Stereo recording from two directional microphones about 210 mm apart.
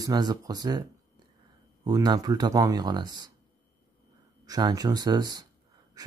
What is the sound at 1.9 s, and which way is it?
Speech, 20° right (ahead or behind).